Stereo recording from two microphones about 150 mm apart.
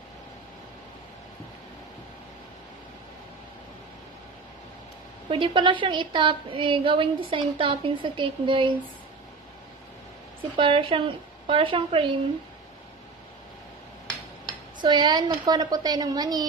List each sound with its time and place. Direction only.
5.3 s a woman's voice: 35° right (ahead or behind)
10.6 s a woman's voice: 35° right (ahead or behind)
14.8 s a woman's voice: 30° right (ahead or behind)